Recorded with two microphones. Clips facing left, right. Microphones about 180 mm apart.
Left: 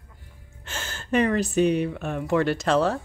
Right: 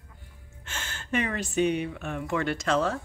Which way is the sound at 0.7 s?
35° left (ahead or behind).